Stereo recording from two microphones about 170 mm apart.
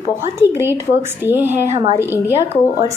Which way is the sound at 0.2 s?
15° right (ahead or behind).